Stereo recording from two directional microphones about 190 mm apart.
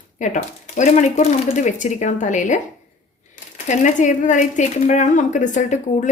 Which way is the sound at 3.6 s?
40° left (ahead or behind).